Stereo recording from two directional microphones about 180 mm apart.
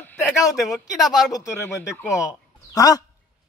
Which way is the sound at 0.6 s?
Centre (ahead or behind).